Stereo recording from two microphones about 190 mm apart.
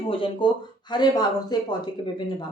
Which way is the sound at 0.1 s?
25° left (ahead or behind).